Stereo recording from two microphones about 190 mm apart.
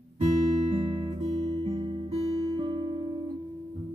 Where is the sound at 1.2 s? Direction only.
35° right (ahead or behind).